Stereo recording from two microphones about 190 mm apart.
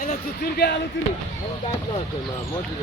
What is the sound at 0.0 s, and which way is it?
Speech, 50° left (ahead or behind).